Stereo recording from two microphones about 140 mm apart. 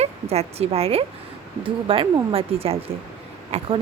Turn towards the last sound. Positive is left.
turn(degrees=-50)  # may be behind; listen again after turning